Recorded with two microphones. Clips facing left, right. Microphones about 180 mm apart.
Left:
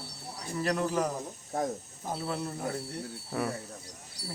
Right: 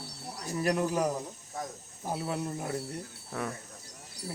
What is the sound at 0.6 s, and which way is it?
Speech, 10° right (ahead or behind).